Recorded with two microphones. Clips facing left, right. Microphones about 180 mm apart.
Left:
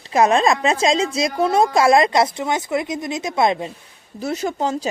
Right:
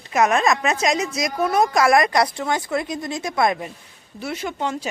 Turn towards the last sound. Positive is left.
turn(degrees=35)  # may be behind; listen again after turning